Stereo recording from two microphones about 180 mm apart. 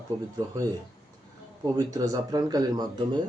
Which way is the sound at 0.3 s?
20° right (ahead or behind).